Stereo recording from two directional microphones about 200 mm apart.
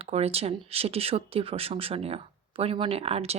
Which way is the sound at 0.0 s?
30° right (ahead or behind).